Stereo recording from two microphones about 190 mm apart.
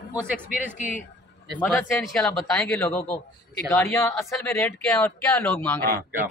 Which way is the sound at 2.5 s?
15° left (ahead or behind).